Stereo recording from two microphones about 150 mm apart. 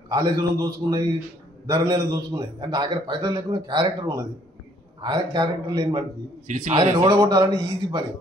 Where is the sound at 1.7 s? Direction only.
25° right (ahead or behind).